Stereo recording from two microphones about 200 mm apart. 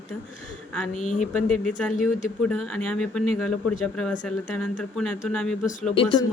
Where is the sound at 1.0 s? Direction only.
40° left (ahead or behind).